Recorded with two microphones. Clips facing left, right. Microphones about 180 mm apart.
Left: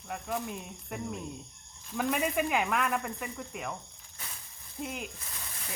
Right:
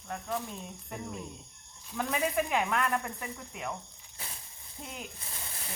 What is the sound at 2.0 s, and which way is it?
Speech, 5° left (ahead or behind).